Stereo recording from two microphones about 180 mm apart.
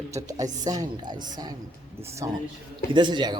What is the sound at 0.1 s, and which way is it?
Speech, 20° right (ahead or behind).